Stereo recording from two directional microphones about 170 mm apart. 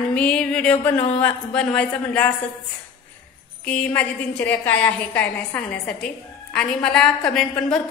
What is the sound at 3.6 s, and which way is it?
A woman's voice, 5° left (ahead or behind).